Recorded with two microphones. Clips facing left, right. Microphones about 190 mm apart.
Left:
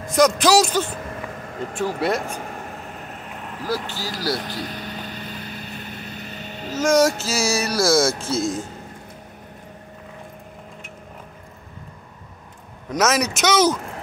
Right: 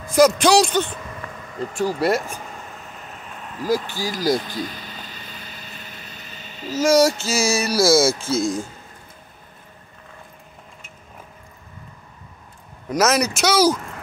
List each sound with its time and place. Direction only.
0.1 s speech: centre (ahead or behind)
0.8 s vehicle: 50° left (ahead or behind)
2.0 s speech: centre (ahead or behind)
3.6 s speech: 15° right (ahead or behind)
4.7 s vehicle: 60° left (ahead or behind)
6.8 s speech: centre (ahead or behind)
12.9 s speech: centre (ahead or behind)